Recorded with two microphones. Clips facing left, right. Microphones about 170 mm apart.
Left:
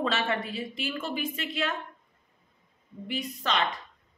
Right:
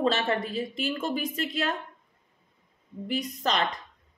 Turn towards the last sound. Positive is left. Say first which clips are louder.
# right 2 dB
turn(degrees=-40)  # may be behind; listen again after turning